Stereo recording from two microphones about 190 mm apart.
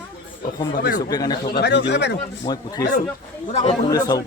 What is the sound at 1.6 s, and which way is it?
Speech, 65° left (ahead or behind).